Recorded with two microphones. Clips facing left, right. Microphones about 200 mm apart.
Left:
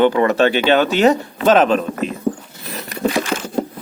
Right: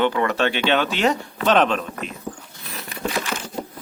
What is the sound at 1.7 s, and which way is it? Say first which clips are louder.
Speech: left 8 dB; 40° left (ahead or behind).